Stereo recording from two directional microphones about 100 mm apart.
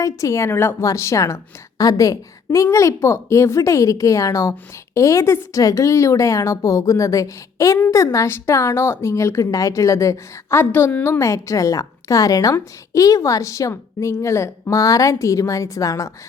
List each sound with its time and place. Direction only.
0.0 s a woman's voice: 30° left (ahead or behind)